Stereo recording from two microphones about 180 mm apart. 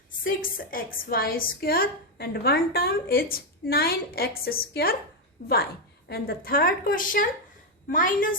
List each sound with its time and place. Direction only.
0.3 s a woman's voice: 50° left (ahead or behind)
6.1 s a woman's voice: 60° left (ahead or behind)